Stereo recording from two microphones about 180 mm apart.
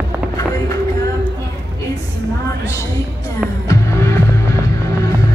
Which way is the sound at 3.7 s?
15° left (ahead or behind).